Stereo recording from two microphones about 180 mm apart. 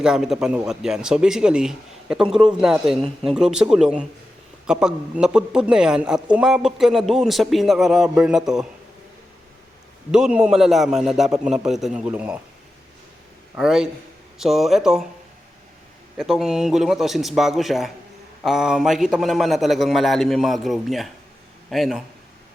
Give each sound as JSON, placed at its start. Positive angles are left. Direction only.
{"t": 0.0, "sound": "a man's voice", "side_deg": -5}
{"t": 10.1, "sound": "a man's voice", "side_deg": -5}
{"t": 13.6, "sound": "a man's voice", "side_deg": -5}
{"t": 16.1, "sound": "a man's voice", "side_deg": 0}